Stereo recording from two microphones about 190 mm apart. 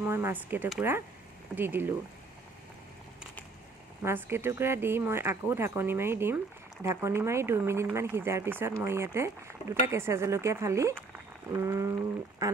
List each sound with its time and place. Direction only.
0.0 s speech: 15° right (ahead or behind)
4.0 s speech: 10° right (ahead or behind)